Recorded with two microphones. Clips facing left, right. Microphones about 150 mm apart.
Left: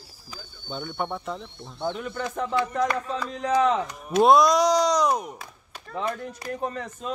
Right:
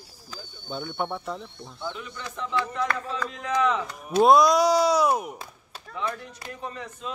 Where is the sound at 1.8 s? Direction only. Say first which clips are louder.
Left 7 dB; 45° left (ahead or behind).